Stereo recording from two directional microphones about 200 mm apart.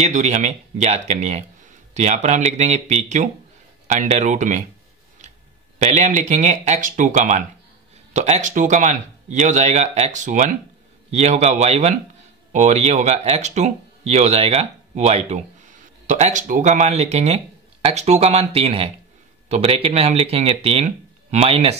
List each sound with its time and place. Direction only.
0.0 s speech: 35° right (ahead or behind)
5.8 s speech: 35° right (ahead or behind)